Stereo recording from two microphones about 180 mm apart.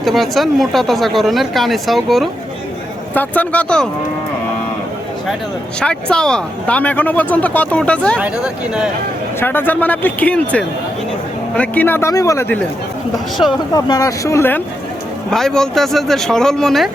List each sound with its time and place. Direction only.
0.0 s speech: centre (ahead or behind)
5.8 s speech: 5° left (ahead or behind)
9.4 s speech: 10° left (ahead or behind)
13.7 s speech: 20° left (ahead or behind)
15.3 s speech: 5° left (ahead or behind)